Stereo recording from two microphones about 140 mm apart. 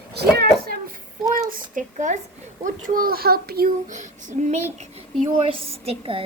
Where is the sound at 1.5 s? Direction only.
65° right (ahead or behind).